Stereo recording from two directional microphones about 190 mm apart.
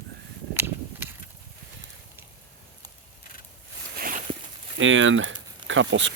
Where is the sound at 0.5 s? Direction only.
10° right (ahead or behind).